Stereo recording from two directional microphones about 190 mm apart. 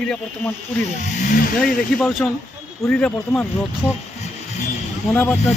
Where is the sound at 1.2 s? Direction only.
45° left (ahead or behind).